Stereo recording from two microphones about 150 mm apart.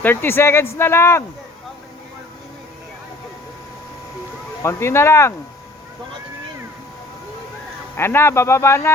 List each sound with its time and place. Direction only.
0.0 s speech: 15° left (ahead or behind)
4.6 s speech: 15° left (ahead or behind)
7.9 s speech: 15° left (ahead or behind)